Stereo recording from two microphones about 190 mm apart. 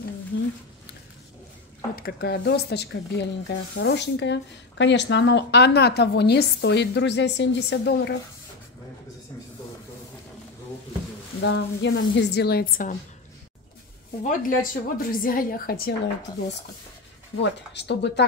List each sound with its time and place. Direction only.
0.3 s a sound: 70° left (ahead or behind)
2.0 s speech: 55° left (ahead or behind)
11.4 s speech: 75° left (ahead or behind); by 12.9 s 50° left (ahead or behind)
14.2 s a woman's voice: 45° left (ahead or behind)
17.4 s speech: 65° left (ahead or behind)